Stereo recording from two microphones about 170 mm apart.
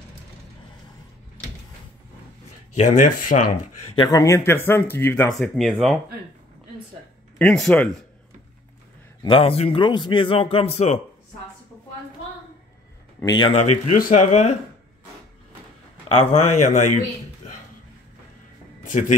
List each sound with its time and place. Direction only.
2.7 s speech: 45° left (ahead or behind)
3.9 s speech: 25° left (ahead or behind)
5.4 s speech: centre (ahead or behind)
7.3 s speech: 5° left (ahead or behind)
9.2 s a man's voice: 30° left (ahead or behind)
13.2 s speech: 25° left (ahead or behind)
13.5 s speech: 45° left (ahead or behind)
16.1 s speech: 35° left (ahead or behind)
17.4 s a sound: 40° left (ahead or behind)
18.9 s a man's voice: 45° left (ahead or behind)